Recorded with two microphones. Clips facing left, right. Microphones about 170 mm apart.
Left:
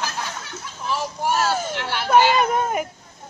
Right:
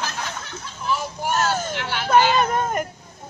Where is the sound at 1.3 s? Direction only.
5° left (ahead or behind).